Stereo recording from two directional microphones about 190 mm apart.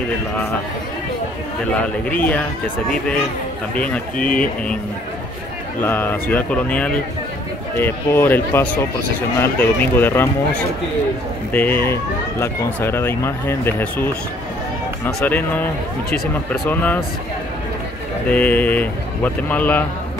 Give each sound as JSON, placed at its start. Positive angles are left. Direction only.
{"t": 1.7, "sound": "speech", "side_deg": 5}
{"t": 5.8, "sound": "speech", "side_deg": 10}
{"t": 15.1, "sound": "speech", "side_deg": 10}
{"t": 18.3, "sound": "speech", "side_deg": 10}